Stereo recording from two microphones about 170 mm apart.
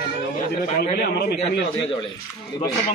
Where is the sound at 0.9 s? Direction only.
70° left (ahead or behind).